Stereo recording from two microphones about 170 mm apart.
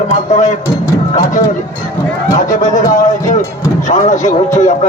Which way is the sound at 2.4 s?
45° left (ahead or behind).